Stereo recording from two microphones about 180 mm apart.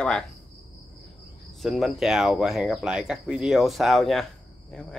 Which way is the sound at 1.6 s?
Centre (ahead or behind).